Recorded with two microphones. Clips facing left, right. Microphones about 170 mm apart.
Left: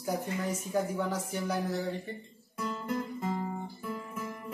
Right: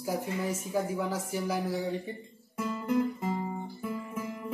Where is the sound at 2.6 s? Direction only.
10° right (ahead or behind).